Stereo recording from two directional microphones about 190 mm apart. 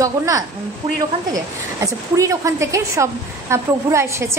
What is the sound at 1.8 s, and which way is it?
A woman's voice, 15° right (ahead or behind).